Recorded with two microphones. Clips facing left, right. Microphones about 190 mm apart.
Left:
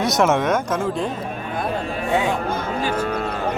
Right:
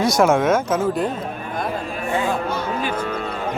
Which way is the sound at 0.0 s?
Centre (ahead or behind).